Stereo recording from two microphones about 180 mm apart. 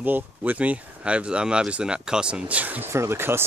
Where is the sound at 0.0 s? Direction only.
10° right (ahead or behind).